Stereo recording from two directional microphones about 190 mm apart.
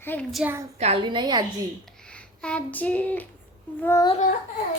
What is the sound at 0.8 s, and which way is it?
Speech, 30° right (ahead or behind).